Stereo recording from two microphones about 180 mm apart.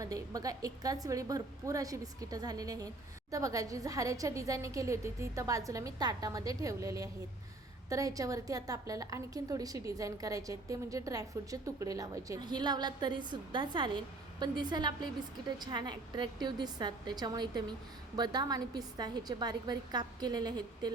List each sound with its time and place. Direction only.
0.0 s a woman's voice: 20° right (ahead or behind)